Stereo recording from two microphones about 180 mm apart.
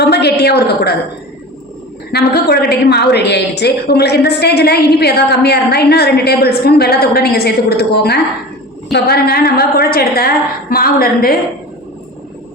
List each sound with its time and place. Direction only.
0.0 s a woman's voice: 65° left (ahead or behind)
2.1 s a woman's voice: 65° left (ahead or behind)